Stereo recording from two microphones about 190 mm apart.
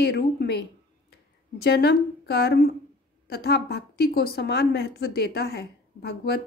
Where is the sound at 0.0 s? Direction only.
55° left (ahead or behind).